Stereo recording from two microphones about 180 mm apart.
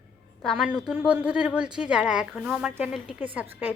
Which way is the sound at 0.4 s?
5° right (ahead or behind).